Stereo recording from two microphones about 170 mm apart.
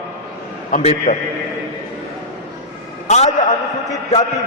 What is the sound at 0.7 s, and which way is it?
Speech, 45° left (ahead or behind).